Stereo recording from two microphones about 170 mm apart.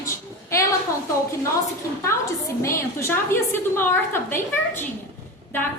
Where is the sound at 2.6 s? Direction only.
15° left (ahead or behind).